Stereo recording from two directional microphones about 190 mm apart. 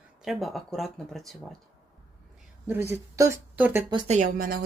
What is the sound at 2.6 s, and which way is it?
Speech, 15° right (ahead or behind).